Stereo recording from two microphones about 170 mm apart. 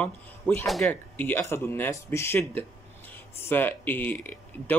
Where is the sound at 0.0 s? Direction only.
5° left (ahead or behind).